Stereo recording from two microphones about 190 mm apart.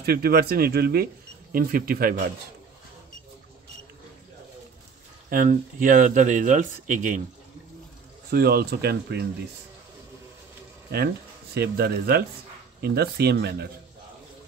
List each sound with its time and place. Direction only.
0.0 s speech: 55° right (ahead or behind)
5.3 s speech: 45° right (ahead or behind)
8.3 s speech: 55° right (ahead or behind)
10.9 s speech: 60° right (ahead or behind)